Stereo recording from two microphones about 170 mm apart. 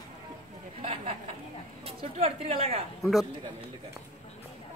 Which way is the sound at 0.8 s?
35° right (ahead or behind).